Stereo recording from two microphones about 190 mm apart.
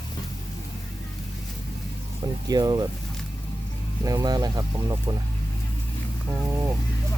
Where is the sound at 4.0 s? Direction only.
20° right (ahead or behind).